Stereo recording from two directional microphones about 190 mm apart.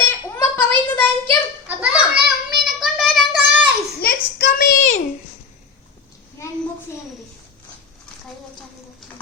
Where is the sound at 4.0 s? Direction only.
60° left (ahead or behind).